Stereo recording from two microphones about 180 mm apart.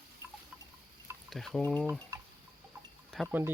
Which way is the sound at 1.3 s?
Centre (ahead or behind).